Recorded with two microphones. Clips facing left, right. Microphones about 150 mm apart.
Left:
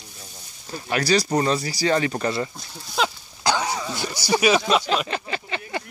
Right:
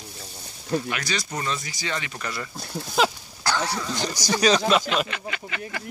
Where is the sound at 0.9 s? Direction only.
35° left (ahead or behind).